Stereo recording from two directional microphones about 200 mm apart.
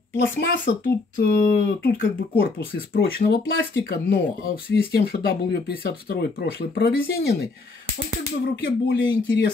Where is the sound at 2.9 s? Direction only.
50° left (ahead or behind).